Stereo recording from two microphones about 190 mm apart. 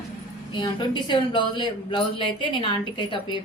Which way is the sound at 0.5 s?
25° left (ahead or behind).